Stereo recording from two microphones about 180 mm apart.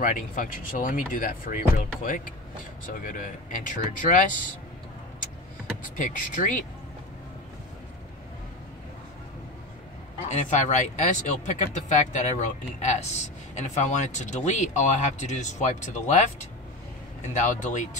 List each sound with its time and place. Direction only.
0.0 s speech: 45° left (ahead or behind)
5.9 s speech: 45° left (ahead or behind)
10.2 s speech: 45° left (ahead or behind)
17.3 s speech: 40° left (ahead or behind)